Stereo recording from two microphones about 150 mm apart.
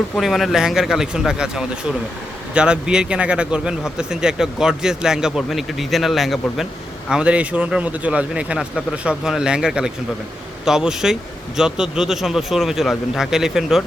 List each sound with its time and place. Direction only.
0.2 s speech: centre (ahead or behind)